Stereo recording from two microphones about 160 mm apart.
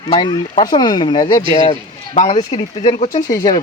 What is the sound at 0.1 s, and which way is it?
Speech, 30° left (ahead or behind).